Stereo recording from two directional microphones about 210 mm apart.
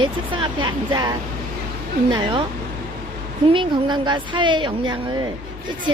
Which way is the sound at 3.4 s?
25° right (ahead or behind).